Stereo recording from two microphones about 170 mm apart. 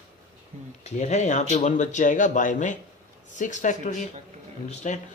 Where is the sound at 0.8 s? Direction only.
45° left (ahead or behind).